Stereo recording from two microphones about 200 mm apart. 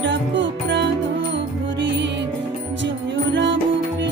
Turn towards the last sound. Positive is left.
turn(degrees=-60)  # may be behind; listen again after turning